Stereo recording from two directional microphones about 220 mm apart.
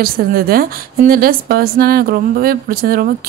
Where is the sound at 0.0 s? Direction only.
45° right (ahead or behind).